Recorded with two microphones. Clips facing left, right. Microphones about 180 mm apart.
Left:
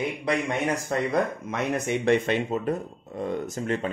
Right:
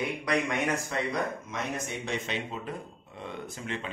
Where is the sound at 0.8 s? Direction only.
55° left (ahead or behind).